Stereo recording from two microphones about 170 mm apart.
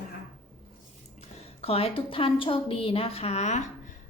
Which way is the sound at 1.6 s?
35° left (ahead or behind).